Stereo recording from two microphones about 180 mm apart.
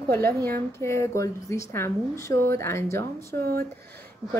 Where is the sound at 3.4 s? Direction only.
55° right (ahead or behind).